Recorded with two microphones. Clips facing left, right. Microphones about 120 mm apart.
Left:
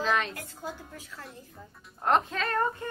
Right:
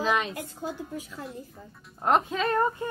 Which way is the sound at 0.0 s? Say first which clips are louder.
Right 2 dB; 5° right (ahead or behind).